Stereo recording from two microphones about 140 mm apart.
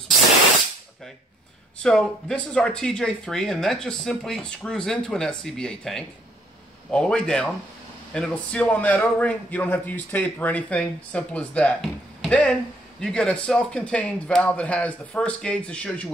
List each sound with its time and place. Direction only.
1.8 s a man's voice: 5° left (ahead or behind)